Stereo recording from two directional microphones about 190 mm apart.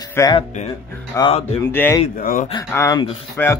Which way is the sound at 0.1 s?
15° left (ahead or behind).